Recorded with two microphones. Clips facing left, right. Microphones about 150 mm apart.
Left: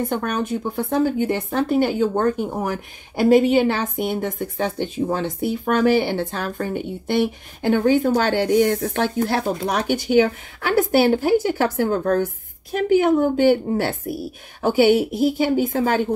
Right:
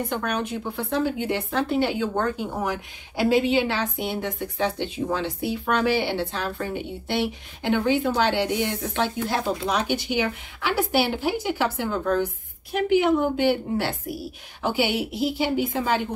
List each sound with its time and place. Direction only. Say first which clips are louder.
0.1 s speech: left 4 dB; 45° left (ahead or behind)